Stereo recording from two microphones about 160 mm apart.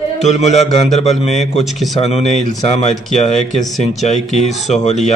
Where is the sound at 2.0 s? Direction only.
40° left (ahead or behind).